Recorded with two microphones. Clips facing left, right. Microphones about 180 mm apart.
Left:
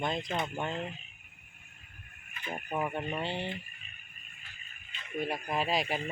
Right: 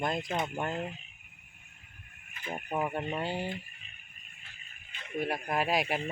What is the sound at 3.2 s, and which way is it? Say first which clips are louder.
Speech: right 1 dB; 5° right (ahead or behind).